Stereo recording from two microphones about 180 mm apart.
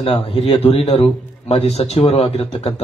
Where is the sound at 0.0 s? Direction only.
35° left (ahead or behind).